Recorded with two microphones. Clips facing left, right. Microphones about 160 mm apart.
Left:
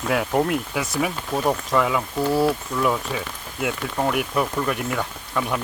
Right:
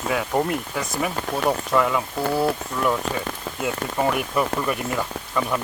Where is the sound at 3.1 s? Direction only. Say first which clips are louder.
Right 1 dB; 75° right (ahead or behind).